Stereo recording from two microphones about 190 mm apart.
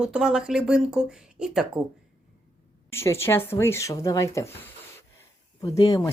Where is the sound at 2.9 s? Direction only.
15° left (ahead or behind).